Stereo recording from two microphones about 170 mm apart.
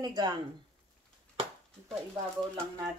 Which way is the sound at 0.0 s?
25° right (ahead or behind).